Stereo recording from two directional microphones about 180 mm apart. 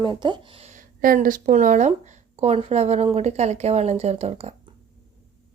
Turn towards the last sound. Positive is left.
turn(degrees=-35)  # may be behind; listen again after turning